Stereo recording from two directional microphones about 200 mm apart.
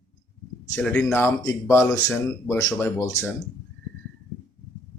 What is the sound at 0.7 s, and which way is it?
Speech, 5° left (ahead or behind).